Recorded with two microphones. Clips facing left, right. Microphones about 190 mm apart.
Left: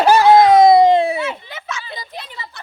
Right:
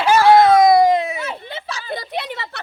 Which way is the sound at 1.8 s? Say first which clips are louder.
Right 6 dB; 55° right (ahead or behind).